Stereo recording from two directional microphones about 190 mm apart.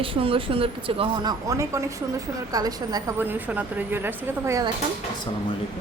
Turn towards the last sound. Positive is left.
turn(degrees=-15)  # may be behind; listen again after turning